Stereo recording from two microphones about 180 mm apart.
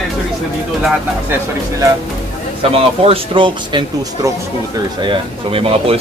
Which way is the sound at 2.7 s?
30° right (ahead or behind).